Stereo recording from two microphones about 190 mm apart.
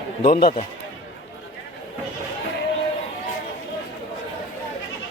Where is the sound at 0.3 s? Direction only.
50° left (ahead or behind).